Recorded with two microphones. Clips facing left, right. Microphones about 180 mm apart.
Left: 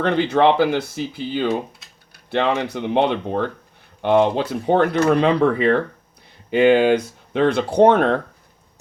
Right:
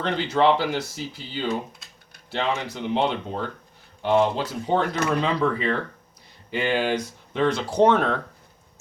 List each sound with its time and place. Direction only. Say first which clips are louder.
0.0 s speech: left 5 dB; 60° left (ahead or behind)